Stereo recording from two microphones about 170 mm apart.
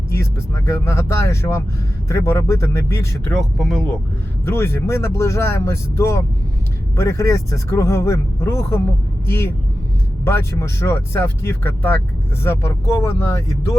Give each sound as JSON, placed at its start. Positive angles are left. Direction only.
{"t": 0.1, "sound": "speech", "side_deg": 15}
{"t": 3.3, "sound": "speech", "side_deg": 0}
{"t": 4.4, "sound": "speech", "side_deg": 15}